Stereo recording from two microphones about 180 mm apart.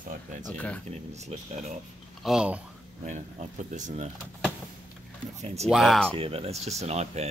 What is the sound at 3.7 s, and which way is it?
Speech, 40° right (ahead or behind).